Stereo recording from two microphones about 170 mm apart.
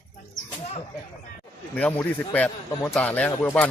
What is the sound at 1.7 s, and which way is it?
Speech, 10° left (ahead or behind).